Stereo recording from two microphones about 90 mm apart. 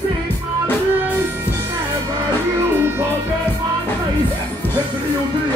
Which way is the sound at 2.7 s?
25° right (ahead or behind).